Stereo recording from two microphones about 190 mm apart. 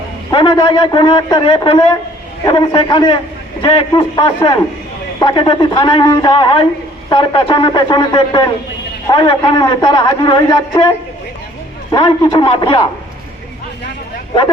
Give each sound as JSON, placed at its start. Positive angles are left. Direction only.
{"t": 0.3, "sound": "a man's voice", "side_deg": 25}
{"t": 11.9, "sound": "a man's voice", "side_deg": 20}